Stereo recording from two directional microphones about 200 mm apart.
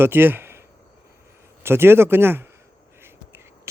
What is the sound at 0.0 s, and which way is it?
Speech, 10° right (ahead or behind).